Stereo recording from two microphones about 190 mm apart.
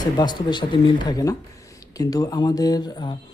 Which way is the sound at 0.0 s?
20° left (ahead or behind).